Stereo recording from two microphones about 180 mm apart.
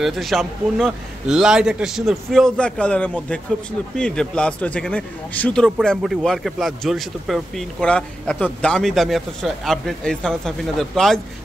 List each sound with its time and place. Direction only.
0.0 s speech: centre (ahead or behind)